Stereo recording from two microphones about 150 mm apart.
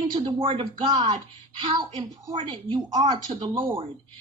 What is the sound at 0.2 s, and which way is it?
A woman's voice, 35° right (ahead or behind).